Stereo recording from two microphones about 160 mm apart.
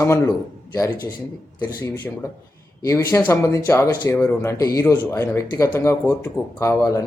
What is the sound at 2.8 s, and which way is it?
Speech, 20° left (ahead or behind).